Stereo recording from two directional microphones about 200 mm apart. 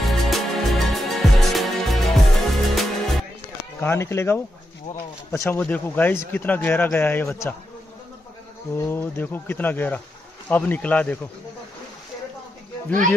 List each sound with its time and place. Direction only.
0.0 s music: centre (ahead or behind)
3.8 s speech: 10° left (ahead or behind)
8.7 s speech: 10° left (ahead or behind)